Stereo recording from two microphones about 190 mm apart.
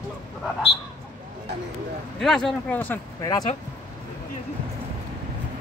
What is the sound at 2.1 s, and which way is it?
Speech, centre (ahead or behind).